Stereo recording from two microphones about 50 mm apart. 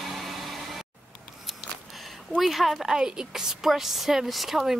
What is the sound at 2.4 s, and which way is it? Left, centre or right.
Speech, centre.